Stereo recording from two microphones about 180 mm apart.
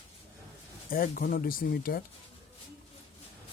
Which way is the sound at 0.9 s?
50° left (ahead or behind).